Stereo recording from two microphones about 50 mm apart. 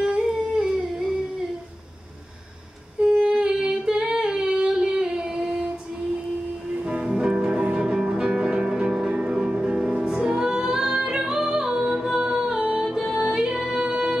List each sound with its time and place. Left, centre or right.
0.0 s a sound: centre
3.0 s singing: centre
6.8 s music: centre